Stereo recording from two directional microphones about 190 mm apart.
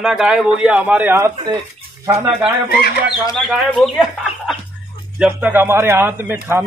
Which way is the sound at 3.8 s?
Centre (ahead or behind).